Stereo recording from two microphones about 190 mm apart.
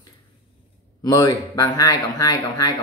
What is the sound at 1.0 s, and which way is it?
Speech, 20° left (ahead or behind).